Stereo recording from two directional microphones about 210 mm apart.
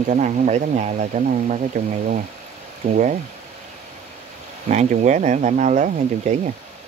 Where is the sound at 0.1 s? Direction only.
35° right (ahead or behind).